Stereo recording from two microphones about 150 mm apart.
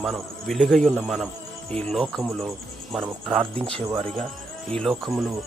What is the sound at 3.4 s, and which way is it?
Speech, 40° right (ahead or behind).